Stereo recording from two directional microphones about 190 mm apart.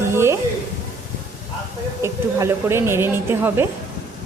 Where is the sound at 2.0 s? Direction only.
15° right (ahead or behind).